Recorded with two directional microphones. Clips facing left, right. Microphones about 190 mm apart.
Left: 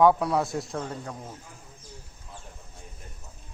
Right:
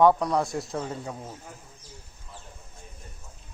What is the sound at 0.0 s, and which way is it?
A man's voice, 5° left (ahead or behind).